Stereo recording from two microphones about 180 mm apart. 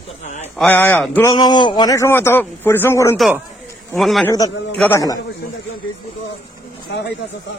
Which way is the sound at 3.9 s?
Centre (ahead or behind).